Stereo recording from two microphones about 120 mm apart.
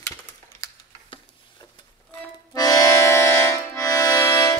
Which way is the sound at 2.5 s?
30° left (ahead or behind).